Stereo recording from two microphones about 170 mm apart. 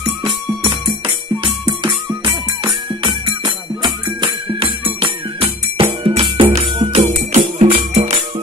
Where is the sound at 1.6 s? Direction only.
30° right (ahead or behind).